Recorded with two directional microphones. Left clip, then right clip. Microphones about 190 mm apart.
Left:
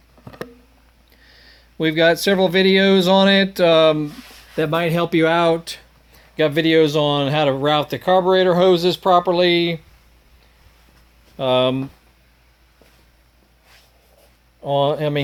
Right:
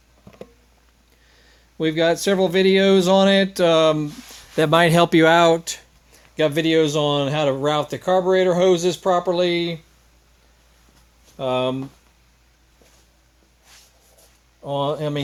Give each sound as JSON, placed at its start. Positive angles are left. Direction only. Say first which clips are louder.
{"t": 1.3, "sound": "a sound", "louder": "left 6 dB", "side_deg": 0}
{"t": 2.2, "sound": "speech", "louder": "left 2 dB", "side_deg": 0}
{"t": 4.5, "sound": "speech", "louder": "right 4 dB", "side_deg": -35}
{"t": 6.3, "sound": "speech", "louder": "left 2 dB", "side_deg": -10}
{"t": 11.3, "sound": "speech", "louder": "left 5 dB", "side_deg": 20}
{"t": 14.6, "sound": "speech", "louder": "left 5 dB", "side_deg": 15}